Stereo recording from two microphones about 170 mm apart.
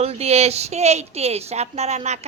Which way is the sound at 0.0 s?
40° right (ahead or behind).